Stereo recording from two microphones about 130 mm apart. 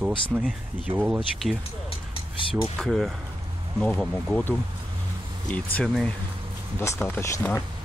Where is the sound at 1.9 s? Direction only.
40° left (ahead or behind).